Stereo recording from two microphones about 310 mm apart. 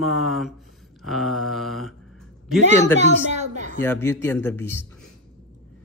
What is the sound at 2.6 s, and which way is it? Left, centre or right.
A woman's voice, right.